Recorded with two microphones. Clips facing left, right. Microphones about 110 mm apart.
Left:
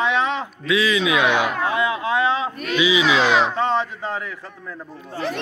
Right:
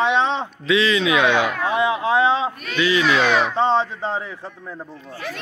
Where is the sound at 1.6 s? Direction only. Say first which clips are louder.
Right 2 dB; 25° right (ahead or behind).